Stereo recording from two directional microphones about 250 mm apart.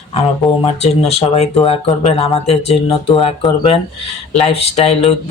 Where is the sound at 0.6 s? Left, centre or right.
Left.